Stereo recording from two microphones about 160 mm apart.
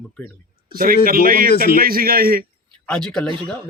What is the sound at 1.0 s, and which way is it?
A man's voice, 65° right (ahead or behind).